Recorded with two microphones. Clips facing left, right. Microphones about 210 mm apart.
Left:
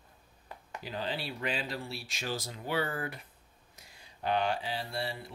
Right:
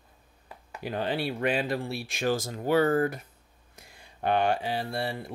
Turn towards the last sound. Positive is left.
turn(degrees=-55)  # may be behind; listen again after turning